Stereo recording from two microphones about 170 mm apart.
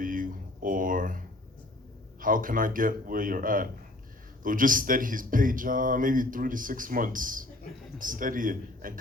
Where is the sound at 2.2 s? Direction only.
55° right (ahead or behind).